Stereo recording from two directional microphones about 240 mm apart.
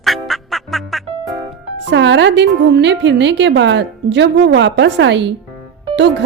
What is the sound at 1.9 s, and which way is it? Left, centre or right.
A woman's voice, right.